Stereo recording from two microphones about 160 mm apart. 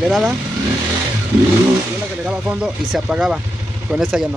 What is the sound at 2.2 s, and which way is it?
Speech, 10° right (ahead or behind).